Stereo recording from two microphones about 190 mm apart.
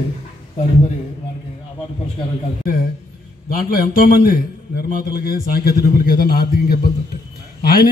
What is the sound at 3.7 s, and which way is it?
A man's voice, 45° left (ahead or behind).